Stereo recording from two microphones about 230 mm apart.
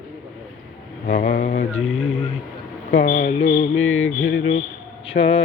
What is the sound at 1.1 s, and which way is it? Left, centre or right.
Mantra, left.